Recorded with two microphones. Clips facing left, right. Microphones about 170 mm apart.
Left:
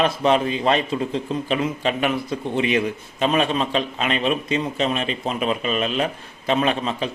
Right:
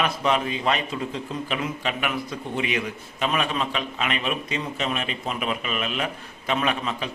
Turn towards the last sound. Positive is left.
turn(degrees=30)  # may be behind; listen again after turning